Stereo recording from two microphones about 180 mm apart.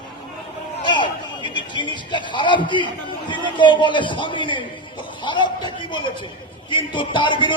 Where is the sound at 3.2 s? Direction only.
25° left (ahead or behind).